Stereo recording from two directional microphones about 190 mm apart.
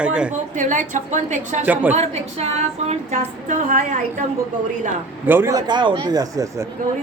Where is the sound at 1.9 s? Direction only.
35° right (ahead or behind).